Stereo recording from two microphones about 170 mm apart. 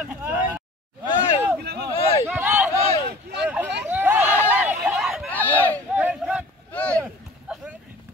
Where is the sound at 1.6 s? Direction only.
75° right (ahead or behind).